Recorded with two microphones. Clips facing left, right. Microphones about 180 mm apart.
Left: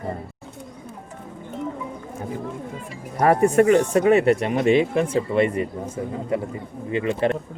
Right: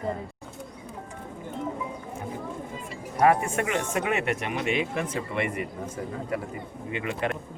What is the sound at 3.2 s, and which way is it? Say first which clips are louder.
A man's voice: left 6 dB; 40° left (ahead or behind).